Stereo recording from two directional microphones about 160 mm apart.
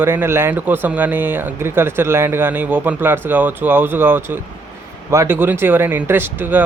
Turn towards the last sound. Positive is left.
turn(degrees=-10)  # may be behind; listen again after turning